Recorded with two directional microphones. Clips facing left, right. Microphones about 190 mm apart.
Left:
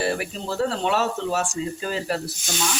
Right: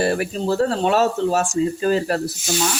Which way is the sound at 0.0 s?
45° right (ahead or behind).